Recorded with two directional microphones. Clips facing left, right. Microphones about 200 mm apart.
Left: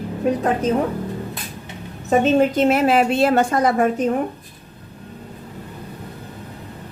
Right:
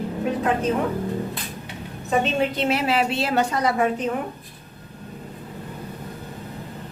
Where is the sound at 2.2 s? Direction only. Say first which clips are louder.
Left 8 dB; 45° left (ahead or behind).